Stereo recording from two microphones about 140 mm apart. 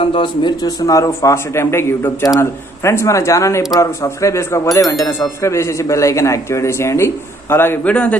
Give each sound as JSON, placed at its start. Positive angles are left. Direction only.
{"t": 0.0, "sound": "a man's voice", "side_deg": 35}